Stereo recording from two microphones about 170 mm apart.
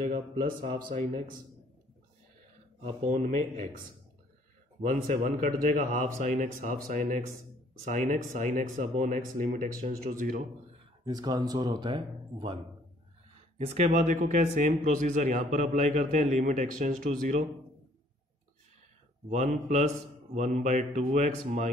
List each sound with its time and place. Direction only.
0.0 s speech: 50° right (ahead or behind)
0.7 s speech: 30° right (ahead or behind)
2.8 s speech: 45° right (ahead or behind)
4.8 s speech: 50° right (ahead or behind)
11.1 s speech: 25° right (ahead or behind)
13.6 s speech: 40° right (ahead or behind)
19.3 s speech: 45° right (ahead or behind)